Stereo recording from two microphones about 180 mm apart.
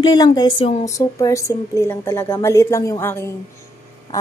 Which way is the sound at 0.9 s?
20° left (ahead or behind).